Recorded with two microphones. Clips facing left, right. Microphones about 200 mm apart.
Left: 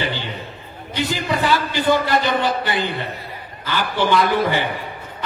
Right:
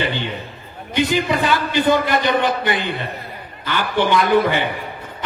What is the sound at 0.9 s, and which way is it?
A man's voice, 20° right (ahead or behind).